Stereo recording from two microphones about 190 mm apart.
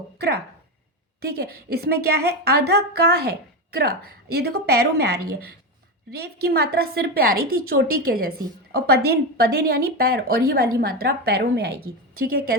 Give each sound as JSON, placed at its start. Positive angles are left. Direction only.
{"t": 1.2, "sound": "a woman's voice", "side_deg": -55}